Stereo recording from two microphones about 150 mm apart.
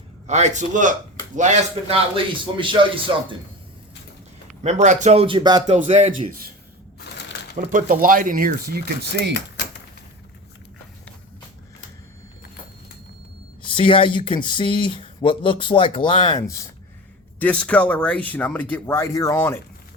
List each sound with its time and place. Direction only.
0.3 s a man's voice: 50° right (ahead or behind)
2.4 s speech: 35° right (ahead or behind)
4.6 s a man's voice: 55° right (ahead or behind)
5.2 s speech: 30° right (ahead or behind)
5.6 s a man's voice: 50° right (ahead or behind)
7.5 s speech: 60° right (ahead or behind); by 8.8 s 80° right
13.6 s speech: 35° left (ahead or behind)
16.4 s speech: 20° left (ahead or behind)
17.4 s speech: 10° left (ahead or behind)